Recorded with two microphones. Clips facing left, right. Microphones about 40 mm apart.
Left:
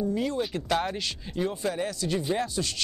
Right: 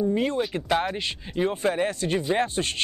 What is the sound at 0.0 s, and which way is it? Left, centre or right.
Speech, right.